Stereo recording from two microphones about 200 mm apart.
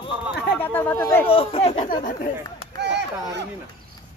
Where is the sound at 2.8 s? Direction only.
60° right (ahead or behind).